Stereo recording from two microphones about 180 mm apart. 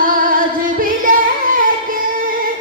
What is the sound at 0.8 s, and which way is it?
Carnatic music, 50° right (ahead or behind).